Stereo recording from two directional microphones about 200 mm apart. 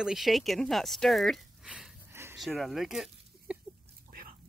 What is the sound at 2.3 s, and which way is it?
Speech, centre (ahead or behind).